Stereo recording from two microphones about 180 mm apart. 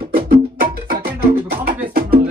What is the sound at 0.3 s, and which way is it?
Music, 60° right (ahead or behind).